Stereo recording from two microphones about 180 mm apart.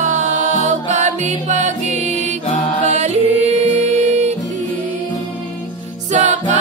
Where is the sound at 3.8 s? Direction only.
40° right (ahead or behind).